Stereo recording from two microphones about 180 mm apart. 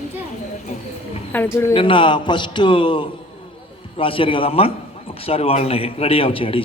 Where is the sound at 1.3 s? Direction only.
10° left (ahead or behind).